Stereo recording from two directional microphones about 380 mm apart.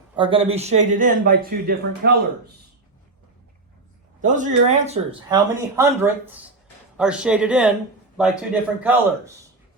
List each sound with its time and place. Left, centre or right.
0.2 s speech: centre
4.2 s a man's voice: centre